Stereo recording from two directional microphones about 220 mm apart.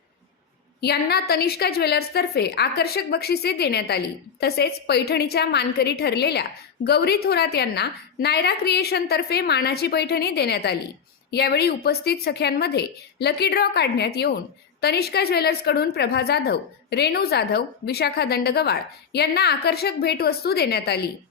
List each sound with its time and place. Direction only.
0.8 s a woman's voice: 45° left (ahead or behind)